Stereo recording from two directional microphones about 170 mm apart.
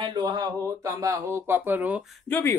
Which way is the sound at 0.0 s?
25° right (ahead or behind).